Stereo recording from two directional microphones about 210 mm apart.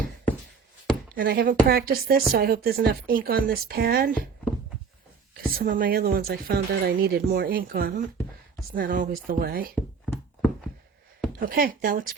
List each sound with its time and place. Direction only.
1.1 s a woman's voice: 45° right (ahead or behind)
5.3 s a woman's voice: 45° right (ahead or behind)
11.3 s a woman's voice: 45° right (ahead or behind)